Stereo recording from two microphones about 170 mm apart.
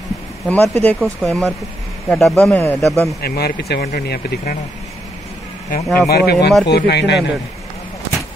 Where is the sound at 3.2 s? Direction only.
65° left (ahead or behind).